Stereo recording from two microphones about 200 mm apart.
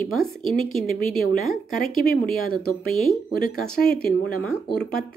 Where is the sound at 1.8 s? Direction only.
45° left (ahead or behind).